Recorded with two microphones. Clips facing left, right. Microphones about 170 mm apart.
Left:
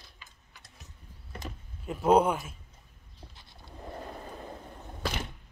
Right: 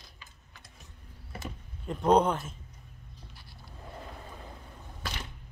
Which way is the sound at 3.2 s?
25° left (ahead or behind).